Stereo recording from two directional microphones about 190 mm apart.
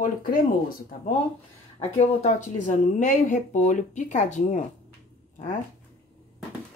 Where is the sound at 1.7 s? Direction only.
35° left (ahead or behind).